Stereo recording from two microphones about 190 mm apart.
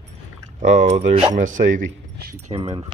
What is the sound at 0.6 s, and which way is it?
Speech, 40° right (ahead or behind).